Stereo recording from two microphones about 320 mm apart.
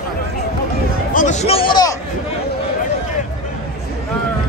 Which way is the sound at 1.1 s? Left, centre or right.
Left.